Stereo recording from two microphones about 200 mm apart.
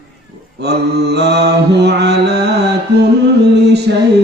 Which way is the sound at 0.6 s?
55° right (ahead or behind).